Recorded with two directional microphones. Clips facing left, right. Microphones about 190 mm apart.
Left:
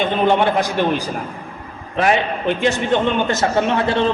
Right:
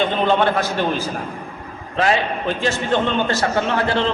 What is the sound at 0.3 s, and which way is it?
A man's voice, 15° left (ahead or behind).